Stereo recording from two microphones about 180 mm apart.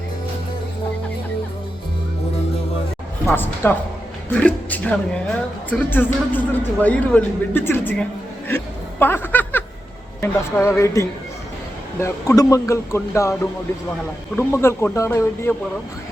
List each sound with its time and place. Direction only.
3.2 s a man's voice: 10° left (ahead or behind)